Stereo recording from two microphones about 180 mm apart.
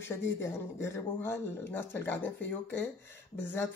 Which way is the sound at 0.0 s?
15° left (ahead or behind).